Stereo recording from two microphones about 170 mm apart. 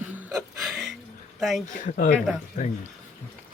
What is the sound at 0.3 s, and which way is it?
Music, centre (ahead or behind).